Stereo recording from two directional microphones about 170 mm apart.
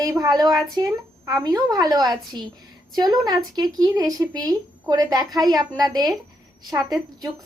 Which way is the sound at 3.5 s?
20° right (ahead or behind).